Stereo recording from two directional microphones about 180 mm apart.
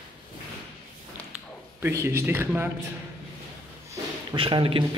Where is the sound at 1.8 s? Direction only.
15° right (ahead or behind).